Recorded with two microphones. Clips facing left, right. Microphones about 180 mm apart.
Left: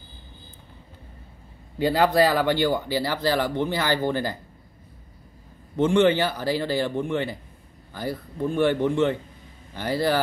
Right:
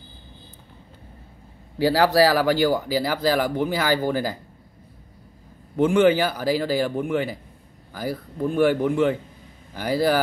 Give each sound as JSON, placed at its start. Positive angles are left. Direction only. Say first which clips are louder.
{"t": 1.8, "sound": "a man's voice", "louder": "right 2 dB", "side_deg": -90}
{"t": 2.7, "sound": "speech", "louder": "right 2 dB", "side_deg": -5}
{"t": 5.8, "sound": "speech", "louder": "right 2 dB", "side_deg": -5}